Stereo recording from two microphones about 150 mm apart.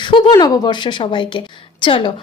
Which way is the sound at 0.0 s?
30° left (ahead or behind).